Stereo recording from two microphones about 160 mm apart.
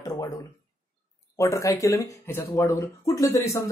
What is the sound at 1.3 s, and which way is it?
Speech, 20° left (ahead or behind).